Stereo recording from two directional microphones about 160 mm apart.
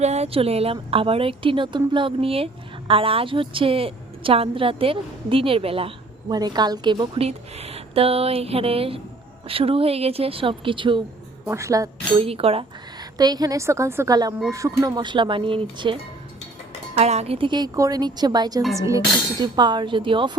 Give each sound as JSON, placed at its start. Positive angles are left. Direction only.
{"t": 0.0, "sound": "a woman's voice", "side_deg": -40}
{"t": 6.3, "sound": "a woman's voice", "side_deg": -25}
{"t": 7.3, "sound": "a woman's voice", "side_deg": -40}
{"t": 11.4, "sound": "a woman's voice", "side_deg": -20}
{"t": 12.2, "sound": "a woman's voice", "side_deg": -35}
{"t": 13.1, "sound": "a woman's voice", "side_deg": -25}
{"t": 17.0, "sound": "a woman's voice", "side_deg": -40}